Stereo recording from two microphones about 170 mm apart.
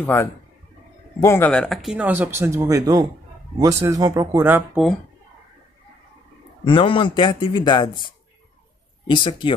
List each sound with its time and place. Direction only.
0.0 s a man's voice: 15° left (ahead or behind); by 4.8 s 10° right (ahead or behind)
6.6 s speech: 30° left (ahead or behind)
9.1 s speech: 30° left (ahead or behind)